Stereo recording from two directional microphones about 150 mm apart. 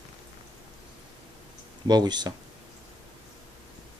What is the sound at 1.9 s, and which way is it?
Speech, 30° right (ahead or behind).